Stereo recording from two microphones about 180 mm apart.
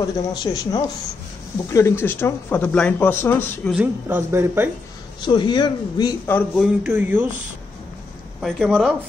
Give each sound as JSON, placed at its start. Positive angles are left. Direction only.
{"t": 0.3, "sound": "a man's voice", "side_deg": 20}
{"t": 3.7, "sound": "speech", "side_deg": -10}
{"t": 5.2, "sound": "a man's voice", "side_deg": 25}
{"t": 6.3, "sound": "speech", "side_deg": 0}
{"t": 8.4, "sound": "speech", "side_deg": 0}